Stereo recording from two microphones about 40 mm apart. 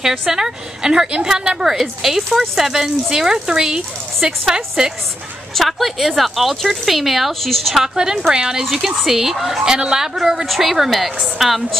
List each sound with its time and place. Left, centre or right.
0.2 s speech: centre
5.6 s speech: centre
7.7 s speech: centre
9.0 s speech: centre
9.7 s speech: centre
10.4 s speech: centre